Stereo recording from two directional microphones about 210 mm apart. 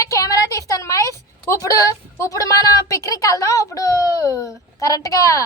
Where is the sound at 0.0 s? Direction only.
15° left (ahead or behind).